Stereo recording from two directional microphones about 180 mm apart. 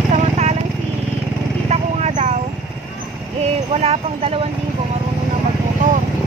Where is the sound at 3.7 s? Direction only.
35° right (ahead or behind).